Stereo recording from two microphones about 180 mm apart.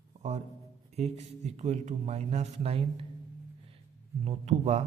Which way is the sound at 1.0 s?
40° right (ahead or behind).